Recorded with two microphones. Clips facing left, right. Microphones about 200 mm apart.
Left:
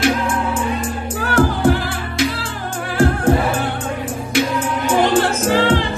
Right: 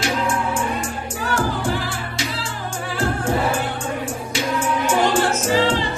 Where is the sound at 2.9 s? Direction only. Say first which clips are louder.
Left 8 dB; 55° left (ahead or behind).